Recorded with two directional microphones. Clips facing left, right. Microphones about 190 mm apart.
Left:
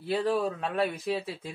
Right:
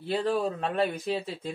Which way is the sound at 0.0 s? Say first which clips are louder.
Even; 5° left (ahead or behind).